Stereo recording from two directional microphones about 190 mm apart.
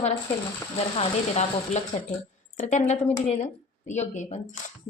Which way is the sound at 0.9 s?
35° left (ahead or behind).